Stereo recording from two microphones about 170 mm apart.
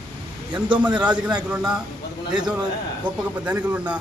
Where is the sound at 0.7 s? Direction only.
10° right (ahead or behind).